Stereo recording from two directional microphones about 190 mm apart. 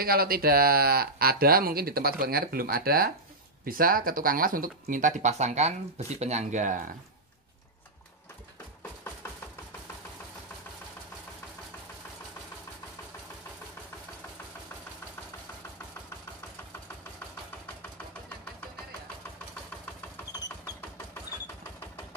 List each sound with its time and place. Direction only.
0.0 s speech: 50° right (ahead or behind)